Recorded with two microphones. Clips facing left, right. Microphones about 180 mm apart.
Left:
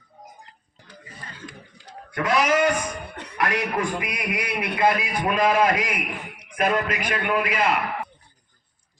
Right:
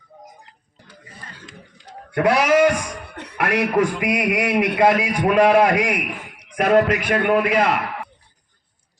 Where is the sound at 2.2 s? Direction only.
70° right (ahead or behind).